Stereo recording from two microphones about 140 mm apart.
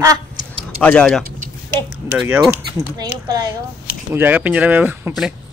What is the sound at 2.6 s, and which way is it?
Speech, 30° right (ahead or behind).